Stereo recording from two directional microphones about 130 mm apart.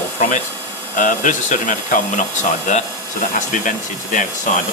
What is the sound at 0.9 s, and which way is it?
Speech, 80° left.